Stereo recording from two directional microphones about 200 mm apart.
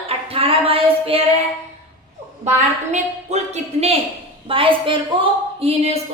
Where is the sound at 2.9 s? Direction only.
35° right (ahead or behind).